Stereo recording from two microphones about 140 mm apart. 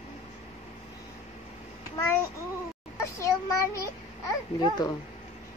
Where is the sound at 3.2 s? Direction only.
25° left (ahead or behind).